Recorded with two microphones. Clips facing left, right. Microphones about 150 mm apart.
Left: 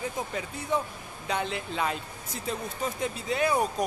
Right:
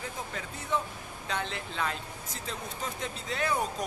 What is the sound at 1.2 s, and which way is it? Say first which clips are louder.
Speech: left 4 dB; 15° left (ahead or behind).